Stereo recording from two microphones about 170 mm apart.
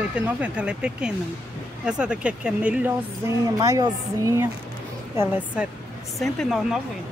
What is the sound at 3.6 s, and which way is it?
A woman's voice, 20° right (ahead or behind).